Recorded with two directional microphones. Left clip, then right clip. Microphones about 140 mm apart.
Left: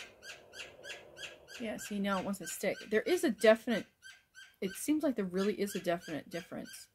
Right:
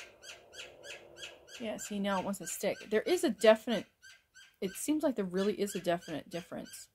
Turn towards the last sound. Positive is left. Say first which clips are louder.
# right 1 dB
turn(degrees=-35)  # may be behind; listen again after turning